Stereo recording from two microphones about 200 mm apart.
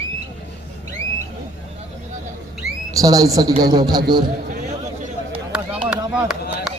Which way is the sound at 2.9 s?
20° right (ahead or behind).